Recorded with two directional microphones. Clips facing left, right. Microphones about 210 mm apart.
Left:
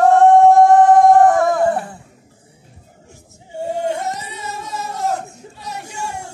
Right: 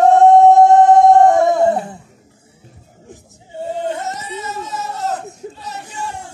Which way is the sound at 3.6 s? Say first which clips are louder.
Left 1 dB; 10° left (ahead or behind).